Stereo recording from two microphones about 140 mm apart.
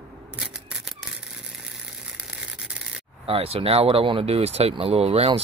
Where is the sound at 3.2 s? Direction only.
45° right (ahead or behind).